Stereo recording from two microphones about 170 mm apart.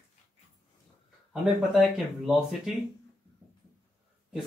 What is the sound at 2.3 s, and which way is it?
Speech, 5° right (ahead or behind).